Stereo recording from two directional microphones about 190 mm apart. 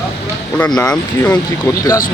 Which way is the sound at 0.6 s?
5° left (ahead or behind).